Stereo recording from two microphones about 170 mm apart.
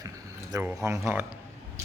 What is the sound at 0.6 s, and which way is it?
Speech, 15° right (ahead or behind).